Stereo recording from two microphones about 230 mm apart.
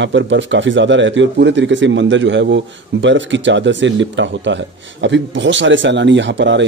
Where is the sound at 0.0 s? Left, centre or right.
Right.